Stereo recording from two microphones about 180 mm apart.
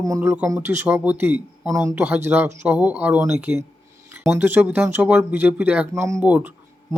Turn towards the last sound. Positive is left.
turn(degrees=-10)  # may be behind; listen again after turning